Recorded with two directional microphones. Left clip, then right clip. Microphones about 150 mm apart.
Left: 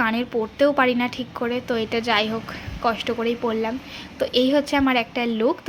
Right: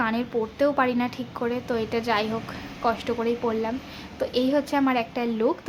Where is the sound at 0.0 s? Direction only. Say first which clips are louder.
Left 3 dB; 20° left (ahead or behind).